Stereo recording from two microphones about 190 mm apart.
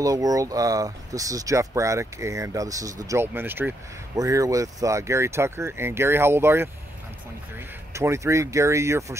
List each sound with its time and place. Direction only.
0.0 s speech: 20° right (ahead or behind)